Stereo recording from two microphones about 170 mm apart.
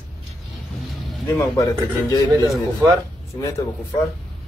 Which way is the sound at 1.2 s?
15° left (ahead or behind).